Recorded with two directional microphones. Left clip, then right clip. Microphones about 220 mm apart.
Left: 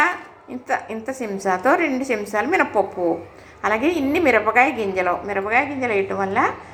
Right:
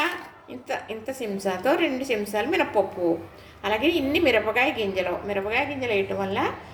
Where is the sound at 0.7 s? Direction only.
Centre (ahead or behind).